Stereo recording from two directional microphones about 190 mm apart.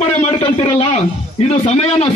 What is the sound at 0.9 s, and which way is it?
A man's voice, 35° left (ahead or behind).